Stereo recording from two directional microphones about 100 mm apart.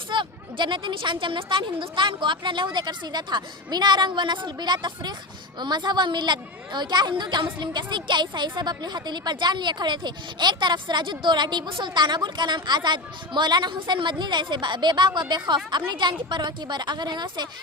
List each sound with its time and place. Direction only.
0.1 s a woman's voice: 50° right (ahead or behind)